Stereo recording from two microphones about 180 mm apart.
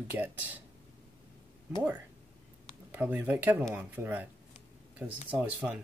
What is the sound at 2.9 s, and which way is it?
Speech, 10° right (ahead or behind).